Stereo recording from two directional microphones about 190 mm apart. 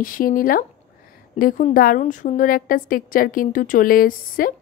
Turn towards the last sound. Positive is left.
turn(degrees=50)  # may be behind; listen again after turning